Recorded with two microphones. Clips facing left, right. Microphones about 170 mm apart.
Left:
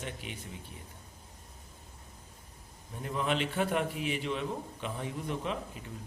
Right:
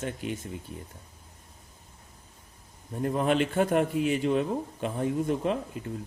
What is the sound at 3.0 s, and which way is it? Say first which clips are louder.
A man's voice: right 7 dB; 45° right (ahead or behind).